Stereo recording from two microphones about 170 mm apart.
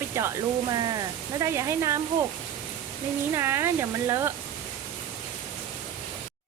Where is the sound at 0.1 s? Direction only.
15° right (ahead or behind).